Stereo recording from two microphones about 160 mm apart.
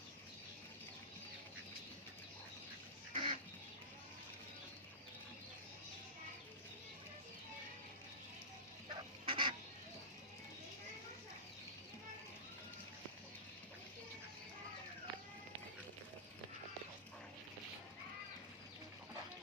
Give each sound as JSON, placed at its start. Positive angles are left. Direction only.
{"t": 3.1, "sound": "duck", "side_deg": -35}
{"t": 9.2, "sound": "fowl", "side_deg": -30}